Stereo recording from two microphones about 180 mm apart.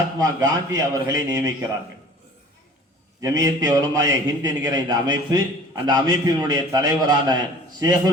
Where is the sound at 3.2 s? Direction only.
20° right (ahead or behind).